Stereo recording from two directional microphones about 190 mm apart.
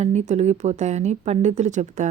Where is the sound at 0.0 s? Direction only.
35° right (ahead or behind).